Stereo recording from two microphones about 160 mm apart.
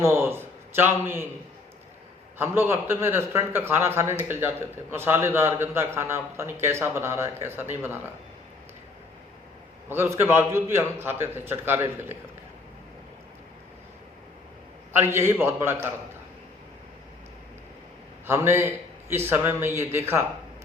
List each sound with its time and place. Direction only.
0.0 s a man's voice: 15° right (ahead or behind)
2.4 s a man's voice: 15° right (ahead or behind)
9.9 s a man's voice: 15° right (ahead or behind)
14.9 s a man's voice: 15° right (ahead or behind)
18.3 s a man's voice: 15° right (ahead or behind)